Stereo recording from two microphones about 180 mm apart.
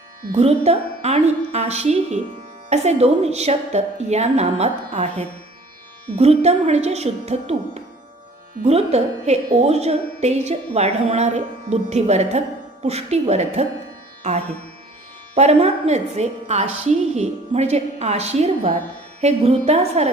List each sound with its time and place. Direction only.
0.3 s a woman's voice: 35° right (ahead or behind)
15.4 s a woman's voice: 35° right (ahead or behind)